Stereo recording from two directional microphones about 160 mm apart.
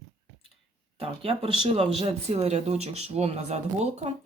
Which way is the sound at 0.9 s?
35° right (ahead or behind).